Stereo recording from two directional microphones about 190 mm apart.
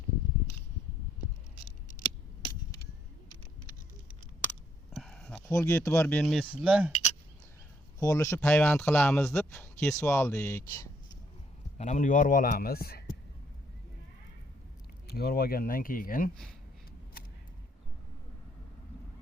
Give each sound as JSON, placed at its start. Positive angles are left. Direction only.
{"t": 4.9, "sound": "a sound", "side_deg": 0}
{"t": 5.5, "sound": "speech", "side_deg": 15}
{"t": 6.4, "sound": "speech", "side_deg": -5}
{"t": 7.9, "sound": "speech", "side_deg": 15}
{"t": 11.8, "sound": "a man's voice", "side_deg": 40}
{"t": 15.0, "sound": "a man's voice", "side_deg": 55}